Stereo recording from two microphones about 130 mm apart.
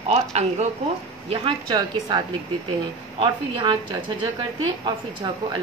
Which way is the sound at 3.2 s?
35° right (ahead or behind).